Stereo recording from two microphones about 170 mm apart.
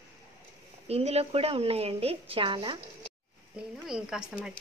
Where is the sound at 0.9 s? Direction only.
35° right (ahead or behind).